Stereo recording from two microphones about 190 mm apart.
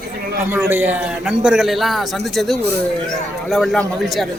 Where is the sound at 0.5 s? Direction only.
10° right (ahead or behind).